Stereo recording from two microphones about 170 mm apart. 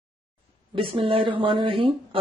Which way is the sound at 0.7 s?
30° right (ahead or behind).